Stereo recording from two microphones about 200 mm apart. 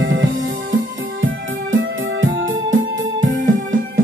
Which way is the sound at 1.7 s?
75° right (ahead or behind).